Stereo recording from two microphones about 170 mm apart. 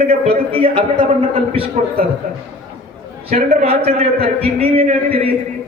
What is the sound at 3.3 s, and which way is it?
A man's voice, 35° right (ahead or behind).